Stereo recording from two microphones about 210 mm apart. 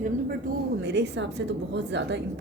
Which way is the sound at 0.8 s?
55° right (ahead or behind).